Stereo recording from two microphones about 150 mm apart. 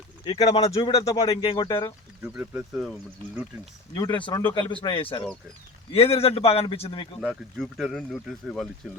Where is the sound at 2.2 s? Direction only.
10° right (ahead or behind).